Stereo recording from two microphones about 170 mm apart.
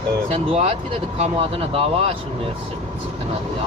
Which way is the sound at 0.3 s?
35° right (ahead or behind).